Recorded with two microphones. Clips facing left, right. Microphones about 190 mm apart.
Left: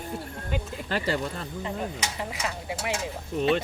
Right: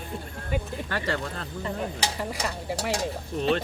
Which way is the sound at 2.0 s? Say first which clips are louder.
Right 2 dB; 40° right (ahead or behind).